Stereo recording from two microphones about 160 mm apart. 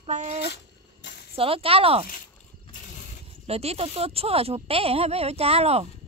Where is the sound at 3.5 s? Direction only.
40° right (ahead or behind).